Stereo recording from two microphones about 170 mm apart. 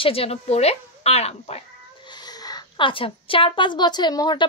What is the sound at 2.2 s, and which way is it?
A woman's voice, 25° left (ahead or behind).